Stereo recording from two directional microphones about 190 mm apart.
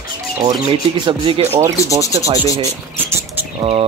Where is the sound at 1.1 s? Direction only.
25° right (ahead or behind).